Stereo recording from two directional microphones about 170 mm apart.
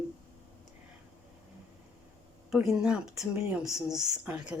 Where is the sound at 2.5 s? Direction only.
5° right (ahead or behind).